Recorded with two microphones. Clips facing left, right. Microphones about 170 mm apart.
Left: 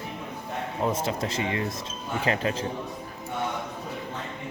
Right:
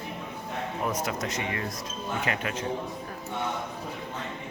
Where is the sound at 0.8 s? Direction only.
25° left (ahead or behind).